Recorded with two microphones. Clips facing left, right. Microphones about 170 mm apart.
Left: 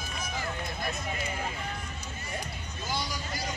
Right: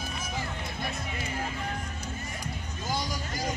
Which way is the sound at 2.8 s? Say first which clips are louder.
Right 2 dB; 45° right (ahead or behind).